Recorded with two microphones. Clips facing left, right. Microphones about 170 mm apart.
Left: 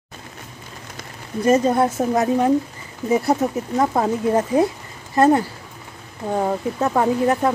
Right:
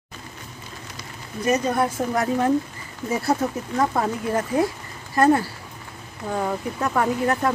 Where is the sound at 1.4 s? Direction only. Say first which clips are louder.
Left 5 dB; 25° left (ahead or behind).